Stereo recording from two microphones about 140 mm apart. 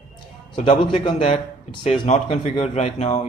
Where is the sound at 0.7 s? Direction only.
35° left (ahead or behind).